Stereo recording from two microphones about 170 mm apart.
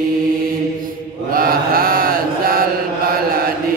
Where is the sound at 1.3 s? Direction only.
60° right (ahead or behind).